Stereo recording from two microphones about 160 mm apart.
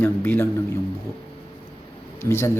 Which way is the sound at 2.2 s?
15° left (ahead or behind).